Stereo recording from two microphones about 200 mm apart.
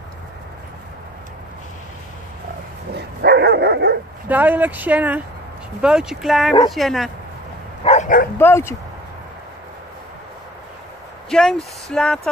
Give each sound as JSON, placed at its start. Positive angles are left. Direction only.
{"t": 3.0, "sound": "dog", "side_deg": -55}
{"t": 4.3, "sound": "speech", "side_deg": -10}
{"t": 7.8, "sound": "bow-wow", "side_deg": 35}
{"t": 8.4, "sound": "speech", "side_deg": 10}
{"t": 11.2, "sound": "speech", "side_deg": 5}